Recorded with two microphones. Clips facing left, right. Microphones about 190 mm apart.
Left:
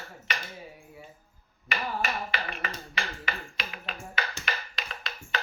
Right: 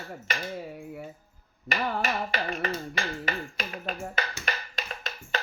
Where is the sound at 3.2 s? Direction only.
45° right (ahead or behind).